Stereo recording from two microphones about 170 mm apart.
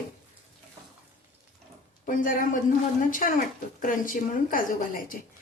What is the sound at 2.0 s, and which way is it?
A woman's voice, 55° left (ahead or behind).